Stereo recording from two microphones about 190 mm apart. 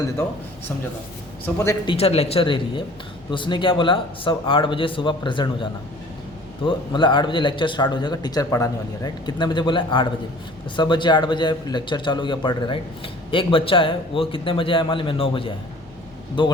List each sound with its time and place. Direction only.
1.9 s a man's voice: 30° left (ahead or behind)
6.7 s a man's voice: 25° left (ahead or behind)